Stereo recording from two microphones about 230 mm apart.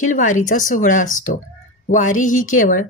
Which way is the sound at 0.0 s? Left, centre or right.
Left.